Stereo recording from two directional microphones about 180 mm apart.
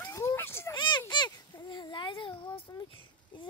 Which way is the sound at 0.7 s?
25° left (ahead or behind).